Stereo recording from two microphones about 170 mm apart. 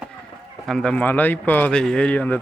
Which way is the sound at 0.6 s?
5° left (ahead or behind).